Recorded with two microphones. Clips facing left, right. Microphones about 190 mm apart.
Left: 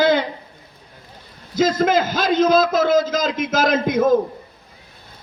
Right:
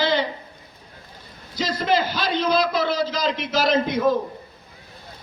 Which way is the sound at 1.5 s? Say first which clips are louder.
Left 5 dB; 50° left (ahead or behind).